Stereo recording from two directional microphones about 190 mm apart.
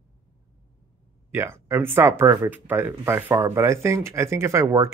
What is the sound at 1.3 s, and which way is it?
Speech, 15° right (ahead or behind).